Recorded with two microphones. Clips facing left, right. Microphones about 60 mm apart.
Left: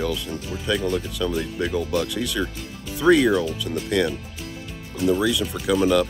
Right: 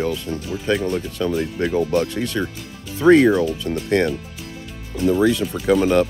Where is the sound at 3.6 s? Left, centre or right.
Right.